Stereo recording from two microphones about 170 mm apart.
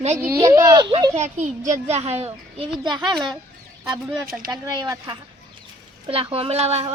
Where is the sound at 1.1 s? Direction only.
45° right (ahead or behind); by 3.3 s 25° right (ahead or behind).